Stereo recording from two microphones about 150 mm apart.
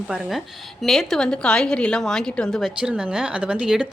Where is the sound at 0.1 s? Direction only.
Centre (ahead or behind).